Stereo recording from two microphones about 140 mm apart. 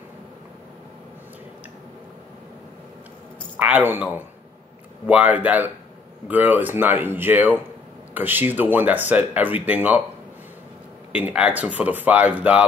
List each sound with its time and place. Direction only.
3.5 s speech: 10° right (ahead or behind)
11.1 s speech: 10° right (ahead or behind)